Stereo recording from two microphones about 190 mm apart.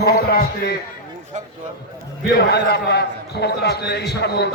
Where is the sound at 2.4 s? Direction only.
55° left (ahead or behind).